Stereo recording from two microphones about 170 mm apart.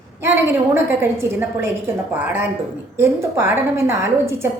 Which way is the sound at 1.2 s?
15° right (ahead or behind).